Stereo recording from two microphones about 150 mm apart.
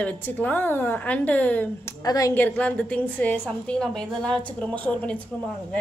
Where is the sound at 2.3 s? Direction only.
10° left (ahead or behind).